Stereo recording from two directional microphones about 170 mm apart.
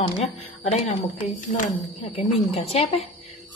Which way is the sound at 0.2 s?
40° left (ahead or behind).